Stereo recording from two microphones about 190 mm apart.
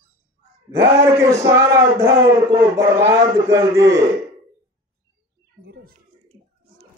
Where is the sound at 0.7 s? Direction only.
15° right (ahead or behind).